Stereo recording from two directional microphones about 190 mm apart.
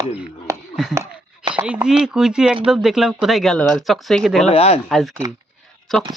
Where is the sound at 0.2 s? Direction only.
5° right (ahead or behind).